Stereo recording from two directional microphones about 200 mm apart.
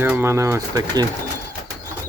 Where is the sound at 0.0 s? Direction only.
10° right (ahead or behind).